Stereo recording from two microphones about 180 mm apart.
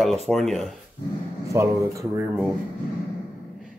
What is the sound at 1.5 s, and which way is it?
Speech, 15° right (ahead or behind).